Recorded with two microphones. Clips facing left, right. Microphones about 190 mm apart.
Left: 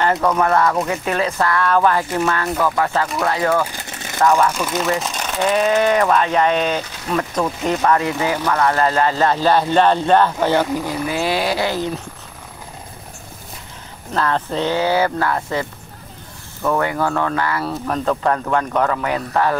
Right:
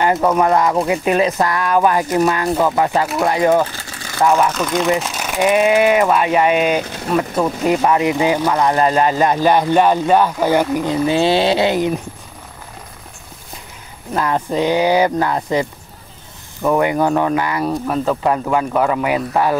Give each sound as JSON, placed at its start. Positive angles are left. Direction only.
{"t": 0.0, "sound": "speech", "side_deg": -10}
{"t": 2.4, "sound": "speech", "side_deg": -25}
{"t": 3.6, "sound": "vehicle", "side_deg": 20}
{"t": 4.2, "sound": "speech", "side_deg": -10}
{"t": 4.6, "sound": "speech", "side_deg": 5}
{"t": 14.1, "sound": "speech", "side_deg": -10}
{"t": 16.6, "sound": "speech", "side_deg": -15}